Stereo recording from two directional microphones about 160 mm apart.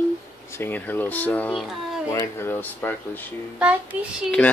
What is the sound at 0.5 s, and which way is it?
Speech, 15° left (ahead or behind).